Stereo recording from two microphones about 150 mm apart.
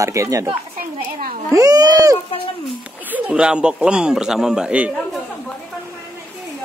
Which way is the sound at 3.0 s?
10° right (ahead or behind).